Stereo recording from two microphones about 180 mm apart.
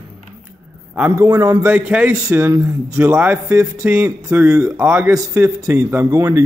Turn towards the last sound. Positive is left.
turn(degrees=-20)  # may be behind; listen again after turning